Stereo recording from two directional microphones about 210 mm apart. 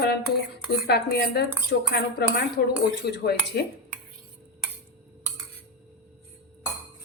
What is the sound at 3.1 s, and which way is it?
Speech, 50° left (ahead or behind).